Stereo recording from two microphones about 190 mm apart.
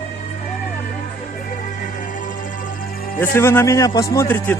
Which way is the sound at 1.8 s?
45° left (ahead or behind).